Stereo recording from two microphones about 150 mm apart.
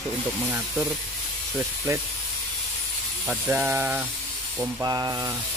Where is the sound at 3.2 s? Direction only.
10° right (ahead or behind).